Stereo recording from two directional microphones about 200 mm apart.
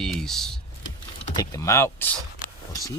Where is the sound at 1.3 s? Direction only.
15° left (ahead or behind).